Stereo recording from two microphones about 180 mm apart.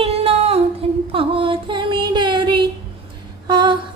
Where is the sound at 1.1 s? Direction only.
30° right (ahead or behind).